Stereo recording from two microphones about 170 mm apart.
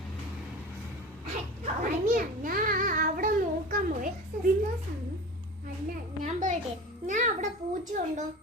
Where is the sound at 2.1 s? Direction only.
55° right (ahead or behind).